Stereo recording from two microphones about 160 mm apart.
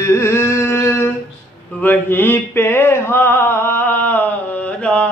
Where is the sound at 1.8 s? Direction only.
10° left (ahead or behind).